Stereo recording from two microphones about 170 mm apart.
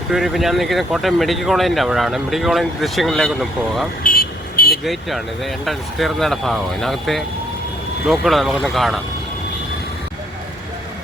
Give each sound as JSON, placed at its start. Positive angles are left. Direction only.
{"t": 0.1, "sound": "speech", "side_deg": 0}
{"t": 4.0, "sound": "vehicle", "side_deg": 55}
{"t": 4.8, "sound": "speech", "side_deg": 0}